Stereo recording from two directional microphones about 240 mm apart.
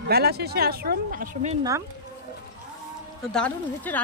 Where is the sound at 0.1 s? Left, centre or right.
Right.